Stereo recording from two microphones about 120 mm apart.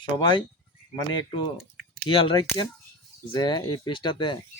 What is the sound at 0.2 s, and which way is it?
Speech, 40° left (ahead or behind).